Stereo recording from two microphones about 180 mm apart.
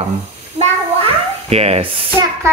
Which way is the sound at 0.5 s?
35° right (ahead or behind).